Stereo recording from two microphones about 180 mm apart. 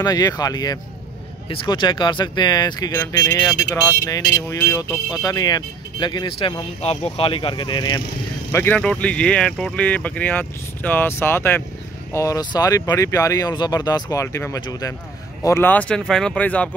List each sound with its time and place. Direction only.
0.0 s speech: 20° left (ahead or behind)
8.5 s speech: 10° left (ahead or behind)